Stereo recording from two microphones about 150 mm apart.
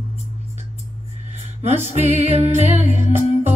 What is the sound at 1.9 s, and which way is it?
Music, 45° right (ahead or behind).